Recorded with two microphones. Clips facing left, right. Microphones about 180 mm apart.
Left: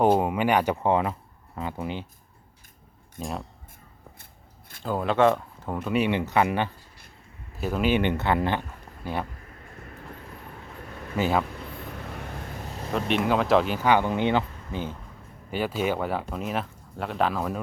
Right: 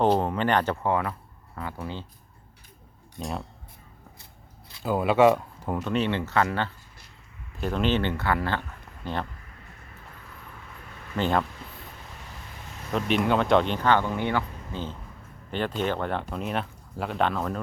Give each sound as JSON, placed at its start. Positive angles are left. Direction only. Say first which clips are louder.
{"t": 0.0, "sound": "speech", "louder": "left 2 dB", "side_deg": 10}
{"t": 3.2, "sound": "speech", "louder": "even", "side_deg": 0}
{"t": 4.8, "sound": "speech", "louder": "right 2 dB", "side_deg": -5}
{"t": 5.8, "sound": "speech", "louder": "left 3 dB", "side_deg": 10}
{"t": 9.0, "sound": "speech", "louder": "left 1 dB", "side_deg": 10}
{"t": 11.2, "sound": "speech", "louder": "left 1 dB", "side_deg": 5}
{"t": 12.0, "sound": "vehicle", "louder": "left 8 dB", "side_deg": 60}
{"t": 12.9, "sound": "speech", "louder": "even", "side_deg": 0}